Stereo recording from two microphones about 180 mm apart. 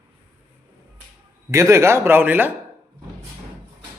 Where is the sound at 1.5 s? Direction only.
15° right (ahead or behind).